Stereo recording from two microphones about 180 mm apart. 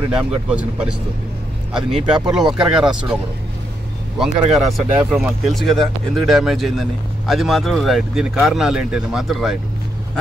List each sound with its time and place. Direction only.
0.2 s speech: 5° right (ahead or behind)
1.8 s speech: 30° right (ahead or behind)
2.0 s speech: 5° right (ahead or behind)
4.2 s speech: centre (ahead or behind)